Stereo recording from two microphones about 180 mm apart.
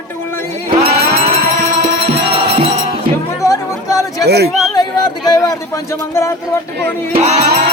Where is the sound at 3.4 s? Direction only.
20° left (ahead or behind).